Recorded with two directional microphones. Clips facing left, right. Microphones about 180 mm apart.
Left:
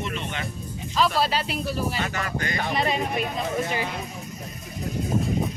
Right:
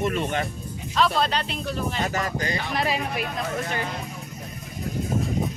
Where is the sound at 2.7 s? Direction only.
Centre (ahead or behind).